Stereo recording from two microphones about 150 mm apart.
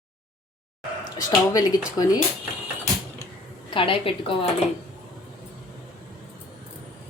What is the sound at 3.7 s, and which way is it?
Speech, 35° left (ahead or behind).